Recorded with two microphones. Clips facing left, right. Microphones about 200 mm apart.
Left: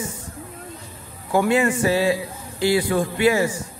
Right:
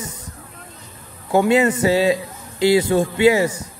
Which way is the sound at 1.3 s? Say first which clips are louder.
Right 3 dB; 20° right (ahead or behind).